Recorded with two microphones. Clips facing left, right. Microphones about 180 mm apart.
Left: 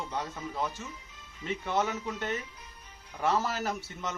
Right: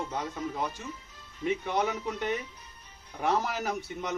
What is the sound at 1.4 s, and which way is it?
A man's voice, 15° right (ahead or behind).